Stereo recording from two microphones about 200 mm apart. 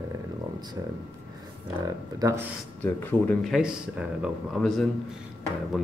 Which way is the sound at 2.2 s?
15° right (ahead or behind).